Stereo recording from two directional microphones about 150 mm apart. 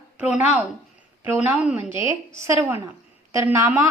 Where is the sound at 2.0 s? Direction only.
20° right (ahead or behind).